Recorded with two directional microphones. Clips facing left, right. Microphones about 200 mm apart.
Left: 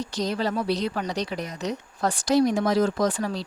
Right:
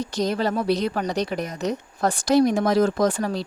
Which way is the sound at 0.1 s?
50° right (ahead or behind).